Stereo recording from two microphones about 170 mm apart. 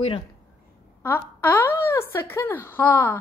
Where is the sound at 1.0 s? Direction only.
10° left (ahead or behind).